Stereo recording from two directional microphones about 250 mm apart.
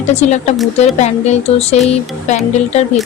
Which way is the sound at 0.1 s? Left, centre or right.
Left.